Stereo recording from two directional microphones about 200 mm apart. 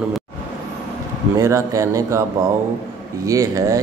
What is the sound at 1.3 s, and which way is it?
Speech, 15° right (ahead or behind).